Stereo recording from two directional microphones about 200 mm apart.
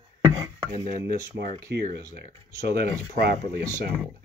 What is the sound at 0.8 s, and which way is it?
Speech, 50° right (ahead or behind).